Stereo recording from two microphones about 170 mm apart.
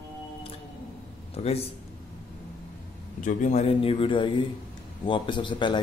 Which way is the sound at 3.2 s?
45° left (ahead or behind).